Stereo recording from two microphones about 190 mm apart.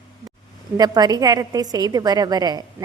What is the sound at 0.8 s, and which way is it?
A woman's voice, 20° right (ahead or behind).